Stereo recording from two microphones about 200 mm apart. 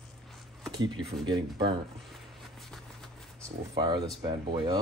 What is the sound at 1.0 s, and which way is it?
Speech, 25° right (ahead or behind).